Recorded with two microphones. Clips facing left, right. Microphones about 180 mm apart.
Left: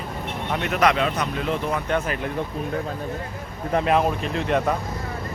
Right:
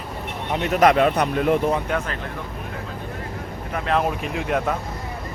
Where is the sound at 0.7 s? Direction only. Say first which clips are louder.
Right 5 dB; 45° right (ahead or behind).